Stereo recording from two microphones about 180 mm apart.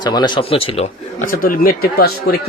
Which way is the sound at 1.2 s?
50° left (ahead or behind).